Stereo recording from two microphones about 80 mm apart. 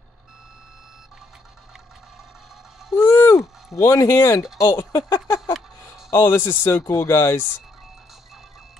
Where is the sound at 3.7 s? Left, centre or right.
Left.